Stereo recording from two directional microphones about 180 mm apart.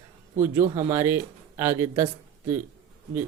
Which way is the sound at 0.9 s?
10° right (ahead or behind).